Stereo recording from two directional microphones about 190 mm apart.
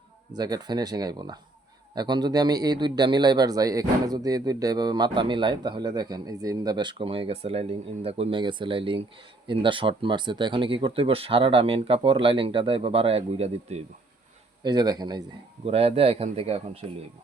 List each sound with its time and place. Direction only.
0.3 s a man's voice: 20° right (ahead or behind)
14.6 s a man's voice: 20° right (ahead or behind)